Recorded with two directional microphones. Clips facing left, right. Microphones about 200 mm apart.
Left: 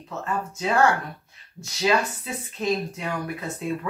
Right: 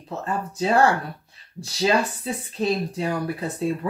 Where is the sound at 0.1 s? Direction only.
35° right (ahead or behind).